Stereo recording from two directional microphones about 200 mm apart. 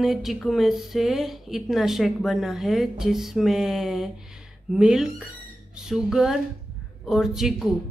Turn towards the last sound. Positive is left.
turn(degrees=0)  # may be behind; listen again after turning